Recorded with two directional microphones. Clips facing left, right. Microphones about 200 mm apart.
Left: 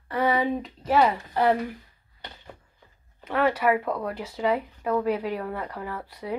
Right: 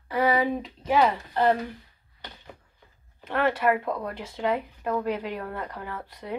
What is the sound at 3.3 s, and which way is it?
Speech, 10° left (ahead or behind).